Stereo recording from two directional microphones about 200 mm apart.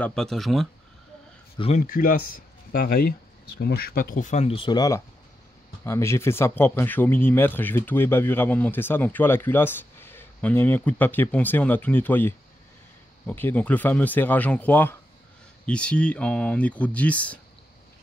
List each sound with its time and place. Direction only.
0.0 s speech: 5° left (ahead or behind)
1.6 s speech: 40° left (ahead or behind); by 17.4 s 5° left (ahead or behind)